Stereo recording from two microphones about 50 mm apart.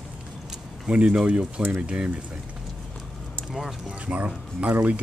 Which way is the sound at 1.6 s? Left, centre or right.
Right.